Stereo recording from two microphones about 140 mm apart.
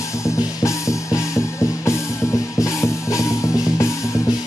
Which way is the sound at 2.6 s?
20° left (ahead or behind).